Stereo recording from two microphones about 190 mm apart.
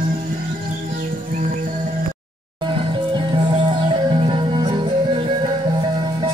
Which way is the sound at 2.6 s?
25° right (ahead or behind).